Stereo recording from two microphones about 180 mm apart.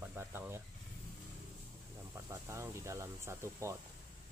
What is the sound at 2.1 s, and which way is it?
Speech, 15° right (ahead or behind).